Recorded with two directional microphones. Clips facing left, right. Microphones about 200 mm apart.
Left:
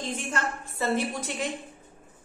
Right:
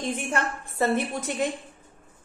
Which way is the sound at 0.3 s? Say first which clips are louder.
Right 3 dB; 55° right (ahead or behind).